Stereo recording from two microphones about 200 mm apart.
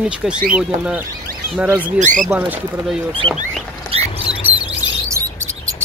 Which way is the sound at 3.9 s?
30° right (ahead or behind).